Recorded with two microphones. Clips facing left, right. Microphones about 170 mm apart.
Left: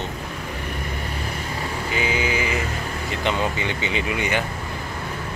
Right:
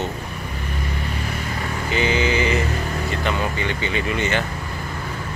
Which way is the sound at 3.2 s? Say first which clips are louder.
Left 2 dB; 15° left (ahead or behind).